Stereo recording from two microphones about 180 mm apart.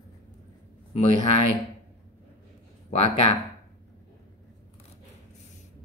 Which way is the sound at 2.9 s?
35° left (ahead or behind).